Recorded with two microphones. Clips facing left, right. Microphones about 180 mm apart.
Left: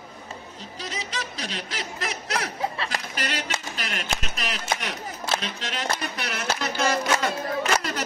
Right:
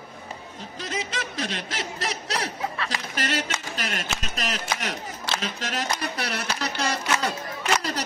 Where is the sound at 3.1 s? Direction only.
45° right (ahead or behind).